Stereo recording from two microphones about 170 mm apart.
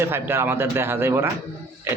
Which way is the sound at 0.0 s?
15° right (ahead or behind).